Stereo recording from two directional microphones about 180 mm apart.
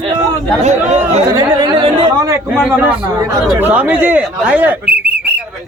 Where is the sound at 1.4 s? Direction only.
25° right (ahead or behind).